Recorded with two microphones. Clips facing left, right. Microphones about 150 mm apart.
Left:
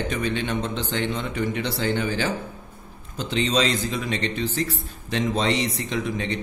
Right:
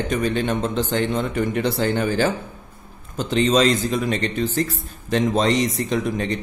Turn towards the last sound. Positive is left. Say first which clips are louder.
# right 4 dB
turn(degrees=-45)  # may be behind; listen again after turning